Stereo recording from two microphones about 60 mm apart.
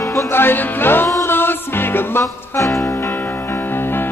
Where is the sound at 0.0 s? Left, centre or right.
Left.